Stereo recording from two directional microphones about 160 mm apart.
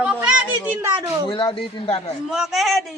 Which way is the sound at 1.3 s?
30° left (ahead or behind).